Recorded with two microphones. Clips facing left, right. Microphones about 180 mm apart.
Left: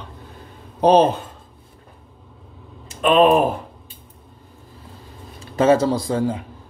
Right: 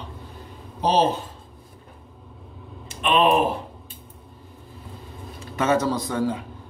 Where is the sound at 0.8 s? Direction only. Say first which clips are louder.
Left 6 dB; 55° left (ahead or behind).